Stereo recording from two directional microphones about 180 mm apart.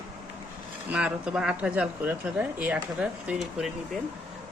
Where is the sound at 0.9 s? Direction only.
5° right (ahead or behind).